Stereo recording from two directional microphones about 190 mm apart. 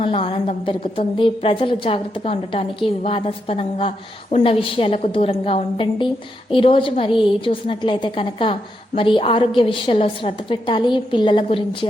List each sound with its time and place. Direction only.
0.0 s a woman's voice: 30° left (ahead or behind)